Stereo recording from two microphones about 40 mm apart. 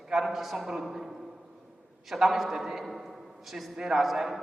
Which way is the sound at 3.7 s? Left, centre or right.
Centre.